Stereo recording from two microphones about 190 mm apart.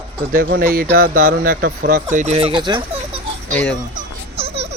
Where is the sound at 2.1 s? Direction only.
35° right (ahead or behind).